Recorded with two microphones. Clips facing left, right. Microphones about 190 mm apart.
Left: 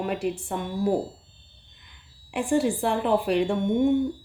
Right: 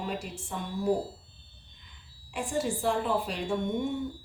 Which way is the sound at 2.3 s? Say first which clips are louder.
Left 8 dB; 60° left (ahead or behind).